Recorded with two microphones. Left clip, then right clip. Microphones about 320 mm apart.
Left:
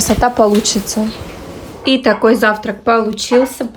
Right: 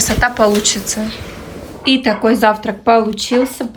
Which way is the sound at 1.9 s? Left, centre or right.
Centre.